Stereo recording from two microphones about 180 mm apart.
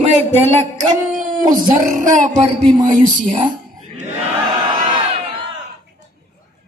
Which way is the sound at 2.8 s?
45° right (ahead or behind).